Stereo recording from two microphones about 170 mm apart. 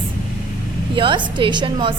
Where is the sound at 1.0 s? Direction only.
30° right (ahead or behind).